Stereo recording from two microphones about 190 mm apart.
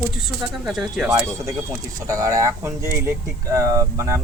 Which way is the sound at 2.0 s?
15° right (ahead or behind).